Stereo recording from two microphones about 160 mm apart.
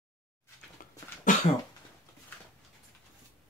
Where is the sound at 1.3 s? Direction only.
55° left (ahead or behind).